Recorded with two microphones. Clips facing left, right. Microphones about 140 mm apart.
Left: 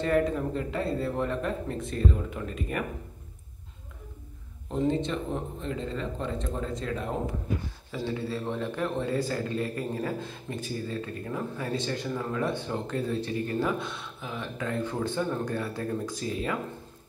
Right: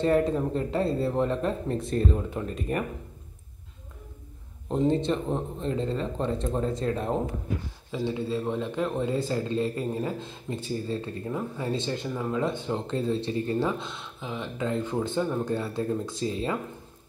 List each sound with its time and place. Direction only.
0.0 s speech: 30° right (ahead or behind)
4.6 s speech: 35° right (ahead or behind)
7.9 s speech: 20° right (ahead or behind)